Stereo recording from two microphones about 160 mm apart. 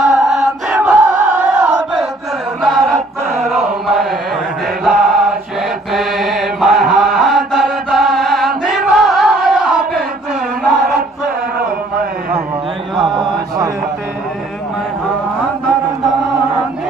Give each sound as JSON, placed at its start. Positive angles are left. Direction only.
{"t": 0.0, "sound": "chant", "side_deg": 0}
{"t": 5.9, "sound": "mantra", "side_deg": 0}
{"t": 13.1, "sound": "mantra", "side_deg": -30}